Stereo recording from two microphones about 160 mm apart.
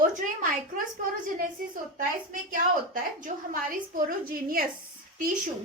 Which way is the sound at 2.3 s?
60° right (ahead or behind).